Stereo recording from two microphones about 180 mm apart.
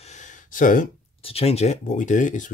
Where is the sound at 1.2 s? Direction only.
35° left (ahead or behind).